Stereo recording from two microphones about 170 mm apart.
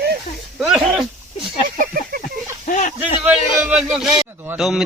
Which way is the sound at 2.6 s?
50° left (ahead or behind).